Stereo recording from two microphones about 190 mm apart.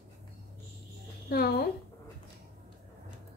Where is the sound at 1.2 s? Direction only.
55° left (ahead or behind).